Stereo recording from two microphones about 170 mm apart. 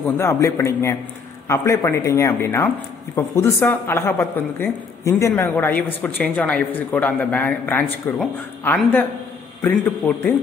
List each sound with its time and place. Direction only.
0.0 s speech: 15° left (ahead or behind)